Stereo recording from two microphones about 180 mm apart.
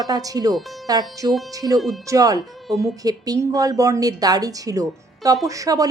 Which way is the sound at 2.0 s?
20° right (ahead or behind).